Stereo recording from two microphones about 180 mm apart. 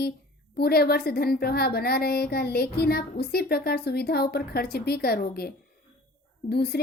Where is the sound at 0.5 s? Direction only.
60° left (ahead or behind).